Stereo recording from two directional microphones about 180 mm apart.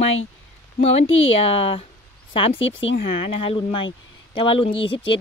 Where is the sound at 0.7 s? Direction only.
35° left (ahead or behind).